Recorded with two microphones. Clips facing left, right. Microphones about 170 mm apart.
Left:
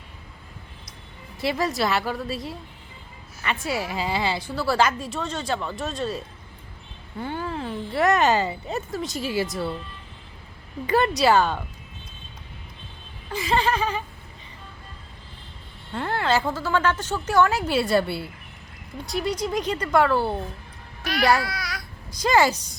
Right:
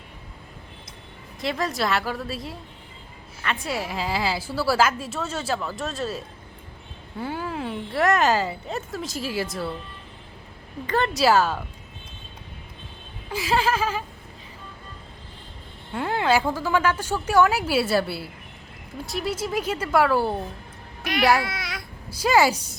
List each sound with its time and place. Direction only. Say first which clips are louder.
1.4 s a woman's voice: left 2 dB; 5° left (ahead or behind)
10.8 s a woman's voice: left 3 dB; 10° left (ahead or behind)
11.1 s a woman's voice: even; centre (ahead or behind)
13.3 s a woman's voice: even; 5° right (ahead or behind)
15.9 s a woman's voice: right 2 dB; 10° right (ahead or behind)
21.4 s speech: even; 25° right (ahead or behind)
22.1 s a woman's voice: right 1 dB; 10° right (ahead or behind)